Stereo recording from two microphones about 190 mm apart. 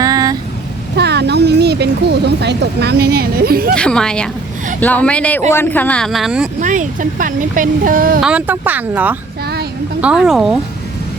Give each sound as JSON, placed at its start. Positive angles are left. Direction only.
{"t": 0.0, "sound": "vehicle", "side_deg": -20}
{"t": 0.9, "sound": "speech", "side_deg": -60}
{"t": 3.8, "sound": "speech", "side_deg": 5}
{"t": 6.6, "sound": "speech", "side_deg": -40}
{"t": 8.2, "sound": "speech", "side_deg": -5}